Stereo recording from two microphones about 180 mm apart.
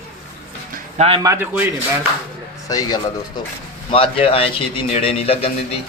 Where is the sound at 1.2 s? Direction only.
15° right (ahead or behind).